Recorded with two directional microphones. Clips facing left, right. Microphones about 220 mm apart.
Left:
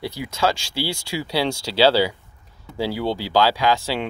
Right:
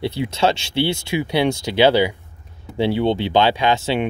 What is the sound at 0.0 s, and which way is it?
Speech, 25° right (ahead or behind).